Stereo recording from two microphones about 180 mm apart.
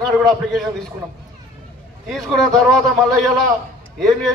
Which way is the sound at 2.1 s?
5° left (ahead or behind).